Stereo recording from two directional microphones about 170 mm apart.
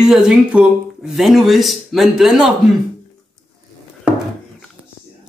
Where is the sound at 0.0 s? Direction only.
5° right (ahead or behind).